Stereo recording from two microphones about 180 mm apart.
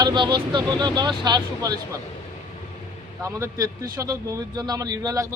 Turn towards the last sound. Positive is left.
turn(degrees=-15)  # may be behind; listen again after turning